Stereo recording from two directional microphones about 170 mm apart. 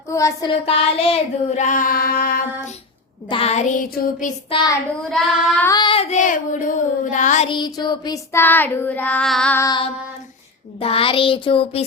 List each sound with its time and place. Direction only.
0.1 s child singing: 20° left (ahead or behind)
0.6 s child singing: 35° left (ahead or behind); by 2.4 s 60° left (ahead or behind)
3.2 s child singing: 35° left (ahead or behind)
3.8 s child singing: 55° left (ahead or behind)
4.4 s child singing: 30° left (ahead or behind)
5.1 s child singing: centre (ahead or behind)
5.6 s child singing: 25° left (ahead or behind); by 7.4 s 45° left (ahead or behind)
7.4 s child singing: 25° left (ahead or behind); by 9.6 s 5° left (ahead or behind)
9.6 s child singing: 20° left (ahead or behind)
10.8 s child singing: 35° left (ahead or behind)